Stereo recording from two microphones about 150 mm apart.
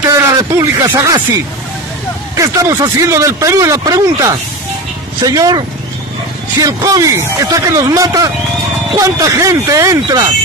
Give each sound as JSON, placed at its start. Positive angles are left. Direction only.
{"t": 0.3, "sound": "a man's voice", "side_deg": -25}
{"t": 6.6, "sound": "a man's voice", "side_deg": -25}